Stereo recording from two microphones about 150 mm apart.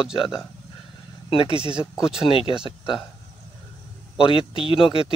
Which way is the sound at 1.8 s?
5° right (ahead or behind).